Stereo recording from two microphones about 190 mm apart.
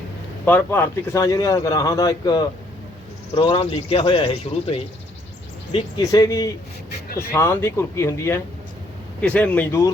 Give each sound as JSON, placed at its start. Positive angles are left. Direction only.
{"t": 0.4, "sound": "a man's voice", "side_deg": 10}